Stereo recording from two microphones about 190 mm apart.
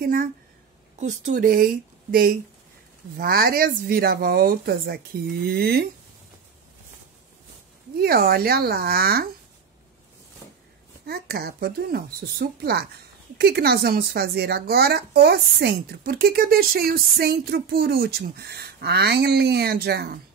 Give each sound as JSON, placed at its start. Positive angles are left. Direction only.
{"t": 0.0, "sound": "speech", "side_deg": -50}
{"t": 8.0, "sound": "speech", "side_deg": -50}
{"t": 11.1, "sound": "speech", "side_deg": -55}